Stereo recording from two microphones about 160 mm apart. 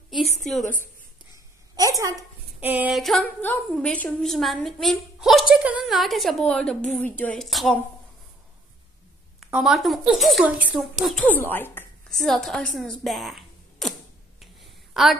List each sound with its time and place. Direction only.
0.4 s a woman's voice: centre (ahead or behind)
1.8 s a woman's voice: 20° right (ahead or behind)
3.0 s a woman's voice: 5° left (ahead or behind)
9.4 s a woman's voice: 5° right (ahead or behind)
11.1 s speech: 5° left (ahead or behind)
12.1 s speech: centre (ahead or behind)
14.4 s a sound: centre (ahead or behind)